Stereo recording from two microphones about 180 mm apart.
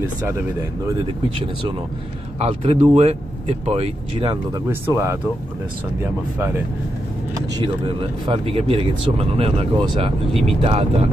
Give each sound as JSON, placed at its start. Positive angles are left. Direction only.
{"t": 0.3, "sound": "speech", "side_deg": -15}
{"t": 2.3, "sound": "speech", "side_deg": -35}
{"t": 4.6, "sound": "speech", "side_deg": -15}
{"t": 6.3, "sound": "speech", "side_deg": -15}
{"t": 7.3, "sound": "speech", "side_deg": -30}